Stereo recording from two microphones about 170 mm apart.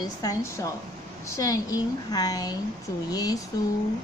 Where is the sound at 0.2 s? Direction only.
20° left (ahead or behind).